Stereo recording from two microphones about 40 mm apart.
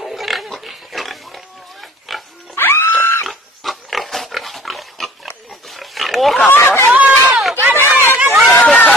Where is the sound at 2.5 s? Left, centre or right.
Left.